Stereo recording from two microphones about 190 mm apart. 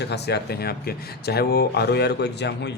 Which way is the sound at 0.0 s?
60° left (ahead or behind).